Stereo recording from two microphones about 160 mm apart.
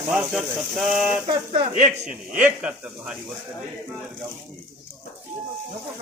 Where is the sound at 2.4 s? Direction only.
10° right (ahead or behind).